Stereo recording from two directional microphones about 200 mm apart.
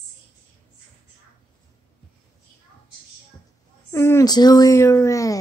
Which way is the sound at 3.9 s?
15° left (ahead or behind).